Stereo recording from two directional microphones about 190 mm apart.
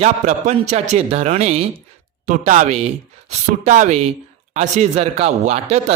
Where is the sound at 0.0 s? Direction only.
35° right (ahead or behind).